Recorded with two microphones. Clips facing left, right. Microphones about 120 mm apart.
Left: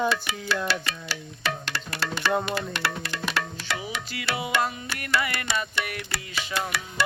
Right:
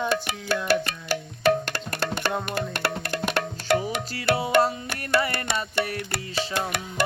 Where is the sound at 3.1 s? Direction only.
50° right (ahead or behind).